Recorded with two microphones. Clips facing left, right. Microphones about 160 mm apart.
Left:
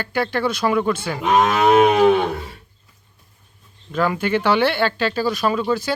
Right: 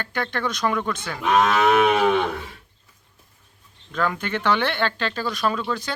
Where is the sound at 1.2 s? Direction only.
30° left (ahead or behind).